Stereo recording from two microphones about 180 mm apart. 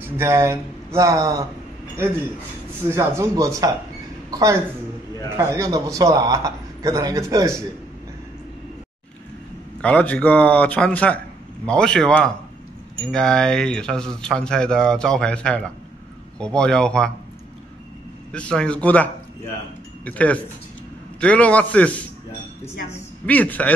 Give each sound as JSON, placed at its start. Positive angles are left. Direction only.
{"t": 0.0, "sound": "speech", "side_deg": -15}
{"t": 2.9, "sound": "a woman's voice", "side_deg": -15}
{"t": 9.8, "sound": "a man's voice", "side_deg": 5}
{"t": 18.3, "sound": "a man's voice", "side_deg": 5}
{"t": 20.1, "sound": "a man's voice", "side_deg": 10}
{"t": 23.2, "sound": "a man's voice", "side_deg": 10}